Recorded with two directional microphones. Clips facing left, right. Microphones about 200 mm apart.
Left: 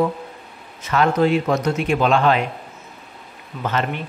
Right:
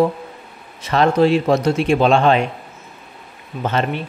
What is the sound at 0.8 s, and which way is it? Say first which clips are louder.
A man's voice: right 3 dB; 35° right (ahead or behind).